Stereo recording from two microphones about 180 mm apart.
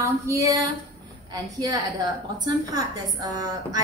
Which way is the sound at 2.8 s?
20° right (ahead or behind).